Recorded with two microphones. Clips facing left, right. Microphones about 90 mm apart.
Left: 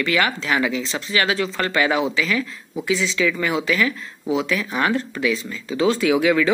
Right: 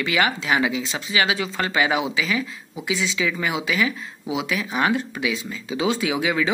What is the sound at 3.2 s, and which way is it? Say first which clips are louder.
Speech: left 3 dB; 20° right (ahead or behind).